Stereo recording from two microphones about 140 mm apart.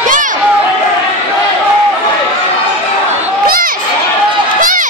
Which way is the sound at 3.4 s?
90° right.